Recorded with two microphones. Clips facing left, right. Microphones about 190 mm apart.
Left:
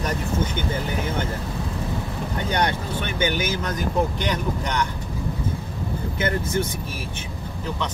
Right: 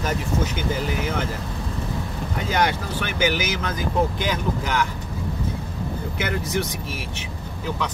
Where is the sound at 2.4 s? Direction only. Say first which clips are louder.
Right 1 dB; 90° right.